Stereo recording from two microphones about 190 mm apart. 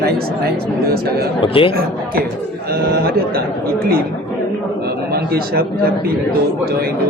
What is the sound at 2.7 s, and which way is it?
A man's voice, 55° right (ahead or behind).